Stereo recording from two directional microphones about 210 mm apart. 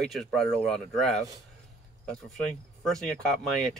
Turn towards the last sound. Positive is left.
turn(degrees=0)  # may be behind; listen again after turning